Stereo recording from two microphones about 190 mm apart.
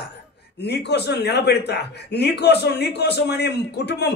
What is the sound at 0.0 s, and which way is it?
A man's voice, 60° left (ahead or behind).